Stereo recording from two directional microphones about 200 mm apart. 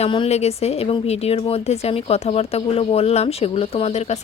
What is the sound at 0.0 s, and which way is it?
A woman's voice, 30° left (ahead or behind).